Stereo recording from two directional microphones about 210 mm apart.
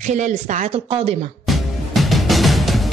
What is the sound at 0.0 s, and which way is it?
Speech, 35° right (ahead or behind).